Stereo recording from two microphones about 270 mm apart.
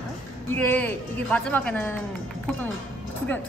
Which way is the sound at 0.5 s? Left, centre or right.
Centre.